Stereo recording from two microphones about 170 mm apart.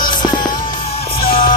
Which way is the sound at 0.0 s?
25° left (ahead or behind).